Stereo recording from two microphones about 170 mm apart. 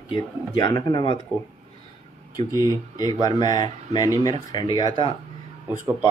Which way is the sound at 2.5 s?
20° left (ahead or behind).